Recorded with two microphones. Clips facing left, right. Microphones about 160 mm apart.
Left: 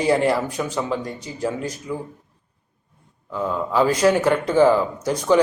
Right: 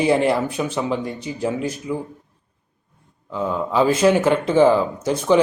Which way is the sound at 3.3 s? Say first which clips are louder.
Right 1 dB; 15° right (ahead or behind).